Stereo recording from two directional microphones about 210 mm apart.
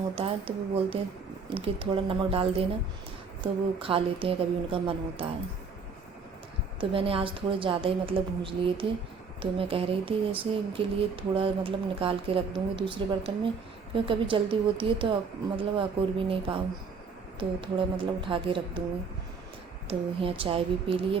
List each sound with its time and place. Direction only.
0.2 s speech: 25° right (ahead or behind)
6.7 s speech: 25° right (ahead or behind)
17.6 s speech: 25° right (ahead or behind)
20.2 s speech: 25° right (ahead or behind)